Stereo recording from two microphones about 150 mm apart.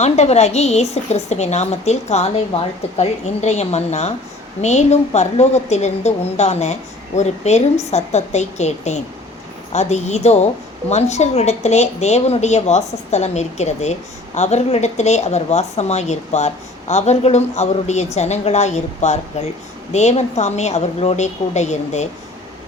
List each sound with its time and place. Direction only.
0.0 s speech: 45° left (ahead or behind)